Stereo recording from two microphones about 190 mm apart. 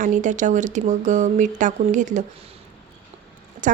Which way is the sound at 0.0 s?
40° right (ahead or behind).